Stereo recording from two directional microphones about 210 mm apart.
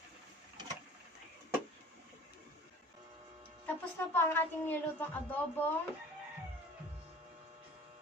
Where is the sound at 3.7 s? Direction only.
10° left (ahead or behind).